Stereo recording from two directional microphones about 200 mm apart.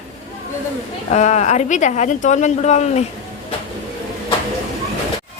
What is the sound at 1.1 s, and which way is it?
Speech, 35° left (ahead or behind).